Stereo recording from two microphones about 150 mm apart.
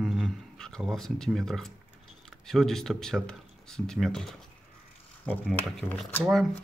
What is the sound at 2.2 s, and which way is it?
Speech, centre (ahead or behind).